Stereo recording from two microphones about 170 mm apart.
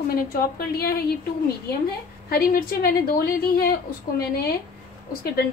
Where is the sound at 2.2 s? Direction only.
60° left (ahead or behind).